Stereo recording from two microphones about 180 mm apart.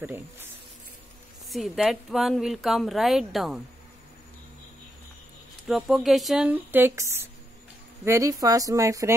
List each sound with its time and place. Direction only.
0.0 s speech: 10° right (ahead or behind)
1.5 s speech: centre (ahead or behind)
5.7 s speech: centre (ahead or behind); by 9.1 s 20° right (ahead or behind)